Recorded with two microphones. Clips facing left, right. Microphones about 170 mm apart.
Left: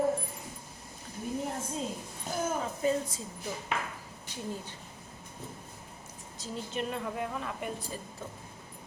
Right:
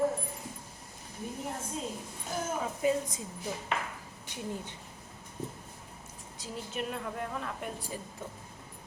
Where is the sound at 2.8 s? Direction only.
15° right (ahead or behind).